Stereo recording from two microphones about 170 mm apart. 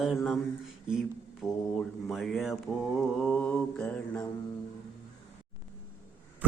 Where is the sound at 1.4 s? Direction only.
5° right (ahead or behind).